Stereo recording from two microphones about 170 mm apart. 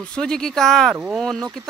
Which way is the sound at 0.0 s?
5° left (ahead or behind).